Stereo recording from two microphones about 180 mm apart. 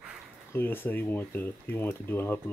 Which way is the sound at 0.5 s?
10° left (ahead or behind).